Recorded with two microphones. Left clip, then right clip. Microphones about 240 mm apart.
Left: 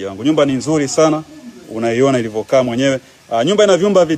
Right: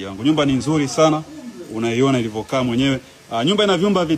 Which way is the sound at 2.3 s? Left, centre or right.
Left.